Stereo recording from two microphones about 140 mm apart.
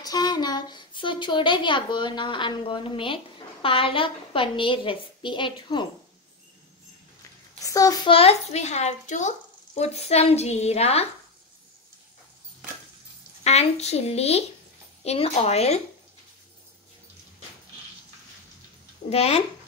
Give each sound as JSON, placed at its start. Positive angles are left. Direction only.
{"t": 0.0, "sound": "a woman's voice", "side_deg": 30}
{"t": 7.6, "sound": "a child's voice", "side_deg": 25}
{"t": 8.1, "sound": "a woman's voice", "side_deg": 45}
{"t": 9.8, "sound": "a woman's voice", "side_deg": 50}
{"t": 13.4, "sound": "a woman's voice", "side_deg": 50}
{"t": 19.0, "sound": "a woman's voice", "side_deg": 45}